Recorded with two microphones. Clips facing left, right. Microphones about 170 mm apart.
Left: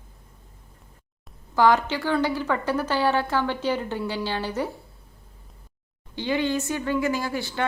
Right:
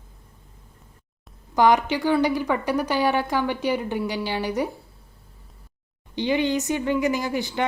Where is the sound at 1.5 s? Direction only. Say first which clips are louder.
Right 1 dB; 15° right (ahead or behind).